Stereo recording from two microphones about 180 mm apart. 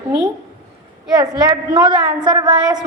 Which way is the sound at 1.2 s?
20° right (ahead or behind).